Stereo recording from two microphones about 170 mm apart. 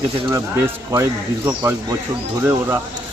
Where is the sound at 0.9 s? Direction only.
15° right (ahead or behind).